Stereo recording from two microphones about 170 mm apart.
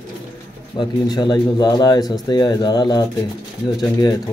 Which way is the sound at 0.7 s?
25° left (ahead or behind).